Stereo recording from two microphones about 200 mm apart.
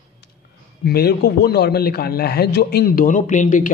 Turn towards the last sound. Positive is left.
turn(degrees=40)  # may be behind; listen again after turning